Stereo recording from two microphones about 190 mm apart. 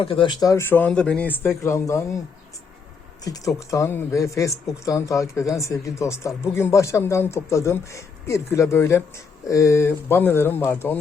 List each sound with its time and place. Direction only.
0.0 s speech: 25° left (ahead or behind)
3.2 s speech: 20° left (ahead or behind)